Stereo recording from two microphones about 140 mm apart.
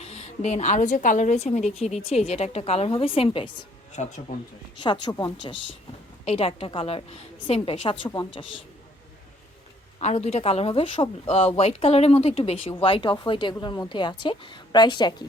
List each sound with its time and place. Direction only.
0.0 s a woman's voice: 50° left (ahead or behind)
3.9 s speech: 55° left (ahead or behind)
4.8 s speech: 35° left (ahead or behind)
6.2 s a woman's voice: 45° left (ahead or behind)
10.0 s speech: 55° left (ahead or behind); by 15.3 s 30° left (ahead or behind)